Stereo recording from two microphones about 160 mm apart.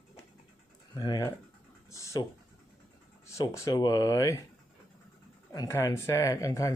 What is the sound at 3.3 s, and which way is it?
Speech, 20° left (ahead or behind).